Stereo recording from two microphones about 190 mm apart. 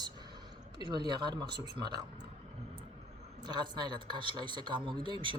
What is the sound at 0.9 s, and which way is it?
Speech, 20° right (ahead or behind).